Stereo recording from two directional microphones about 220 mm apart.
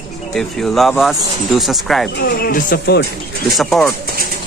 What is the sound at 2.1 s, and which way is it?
Speech, 40° left (ahead or behind).